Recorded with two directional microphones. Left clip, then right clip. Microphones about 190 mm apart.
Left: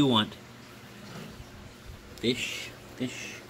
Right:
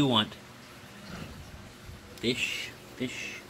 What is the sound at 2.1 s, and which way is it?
Speech, 5° right (ahead or behind).